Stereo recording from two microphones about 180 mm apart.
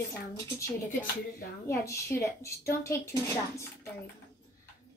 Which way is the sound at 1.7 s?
15° left (ahead or behind).